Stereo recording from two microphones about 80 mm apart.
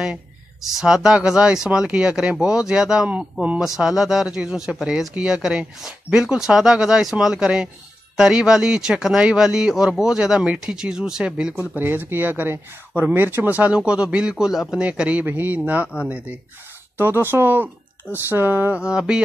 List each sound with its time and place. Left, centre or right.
0.0 s a sound: centre
0.7 s speech: centre
11.8 s speech: right
13.6 s a man's voice: centre
14.9 s speech: centre
16.9 s speech: right
18.8 s speech: centre